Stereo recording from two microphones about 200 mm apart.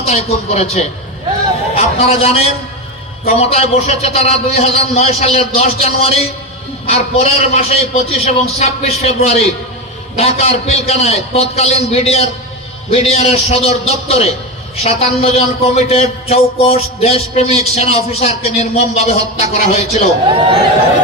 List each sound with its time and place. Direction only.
0.1 s a man's voice: 35° left (ahead or behind)
20.2 s speech: 25° right (ahead or behind)